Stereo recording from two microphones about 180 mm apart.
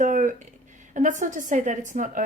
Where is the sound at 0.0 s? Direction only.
45° right (ahead or behind).